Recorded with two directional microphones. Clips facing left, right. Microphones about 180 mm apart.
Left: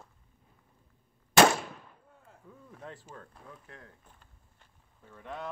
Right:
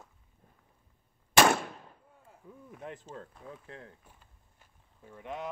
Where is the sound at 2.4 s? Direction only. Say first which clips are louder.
Right 3 dB; 15° right (ahead or behind).